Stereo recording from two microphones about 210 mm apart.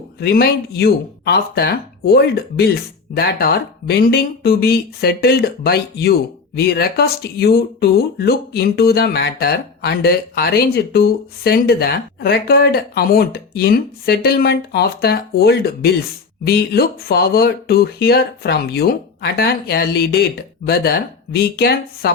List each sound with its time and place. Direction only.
0.2 s speech: 50° left (ahead or behind)